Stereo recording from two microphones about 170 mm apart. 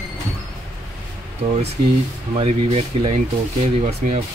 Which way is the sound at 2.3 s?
35° right (ahead or behind).